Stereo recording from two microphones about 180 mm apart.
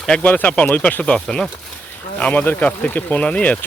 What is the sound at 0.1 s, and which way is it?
Speech, 10° left (ahead or behind).